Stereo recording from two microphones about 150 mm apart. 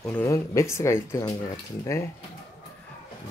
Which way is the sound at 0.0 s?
15° left (ahead or behind).